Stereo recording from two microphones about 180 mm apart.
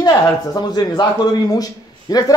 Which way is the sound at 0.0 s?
20° left (ahead or behind).